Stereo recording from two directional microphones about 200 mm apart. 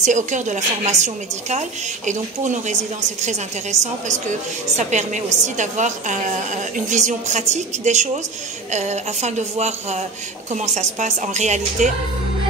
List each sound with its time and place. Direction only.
0.0 s a woman's voice: 40° right (ahead or behind)